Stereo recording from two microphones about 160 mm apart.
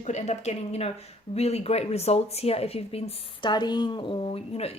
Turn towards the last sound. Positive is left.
turn(degrees=40)  # may be behind; listen again after turning